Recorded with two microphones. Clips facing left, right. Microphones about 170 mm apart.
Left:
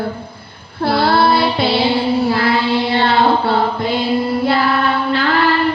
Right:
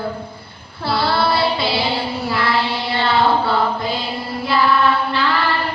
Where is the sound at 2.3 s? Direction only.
55° left (ahead or behind).